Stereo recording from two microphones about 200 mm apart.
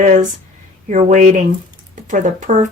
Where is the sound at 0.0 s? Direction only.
40° right (ahead or behind).